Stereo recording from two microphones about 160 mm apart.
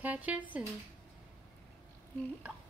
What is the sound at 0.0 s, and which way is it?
Speech, 10° right (ahead or behind).